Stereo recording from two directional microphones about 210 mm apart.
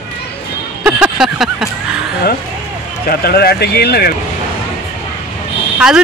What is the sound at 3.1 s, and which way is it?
Speech, 45° left (ahead or behind).